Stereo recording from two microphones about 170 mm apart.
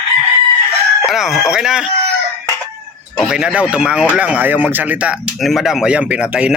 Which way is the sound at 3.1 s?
5° right (ahead or behind).